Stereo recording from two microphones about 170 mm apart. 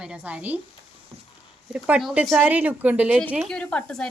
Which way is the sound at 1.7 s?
5° right (ahead or behind).